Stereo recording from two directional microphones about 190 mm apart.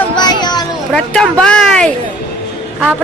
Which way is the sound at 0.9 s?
5° left (ahead or behind).